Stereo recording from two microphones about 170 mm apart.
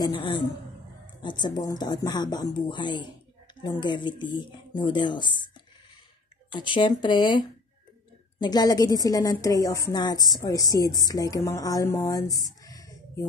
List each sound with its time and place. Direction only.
0.0 s a woman's voice: 25° left (ahead or behind)
6.5 s a woman's voice: 30° left (ahead or behind)